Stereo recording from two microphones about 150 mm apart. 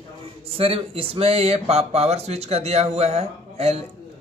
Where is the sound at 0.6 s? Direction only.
40° right (ahead or behind).